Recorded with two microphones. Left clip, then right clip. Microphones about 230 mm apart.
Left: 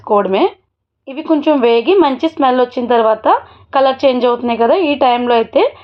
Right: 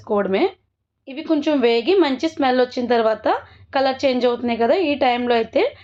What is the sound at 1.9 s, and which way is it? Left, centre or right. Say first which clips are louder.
A woman's voice: left 6 dB; left.